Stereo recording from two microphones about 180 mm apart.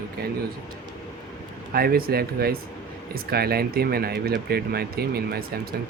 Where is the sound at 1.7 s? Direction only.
55° right (ahead or behind).